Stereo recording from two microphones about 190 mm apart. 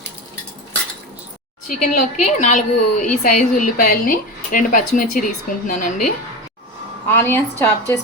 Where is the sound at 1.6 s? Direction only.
40° left (ahead or behind).